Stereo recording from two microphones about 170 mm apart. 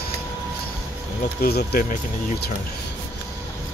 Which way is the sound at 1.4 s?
60° left (ahead or behind).